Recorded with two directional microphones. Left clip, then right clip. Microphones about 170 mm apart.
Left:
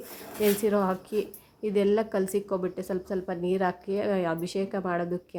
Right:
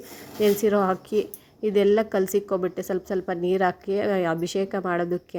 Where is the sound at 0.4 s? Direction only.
20° right (ahead or behind).